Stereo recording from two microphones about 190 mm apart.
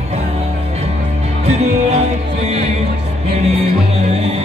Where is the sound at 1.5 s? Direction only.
35° right (ahead or behind).